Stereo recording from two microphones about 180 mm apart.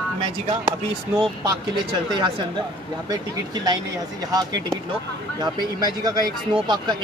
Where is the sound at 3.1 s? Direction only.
20° right (ahead or behind).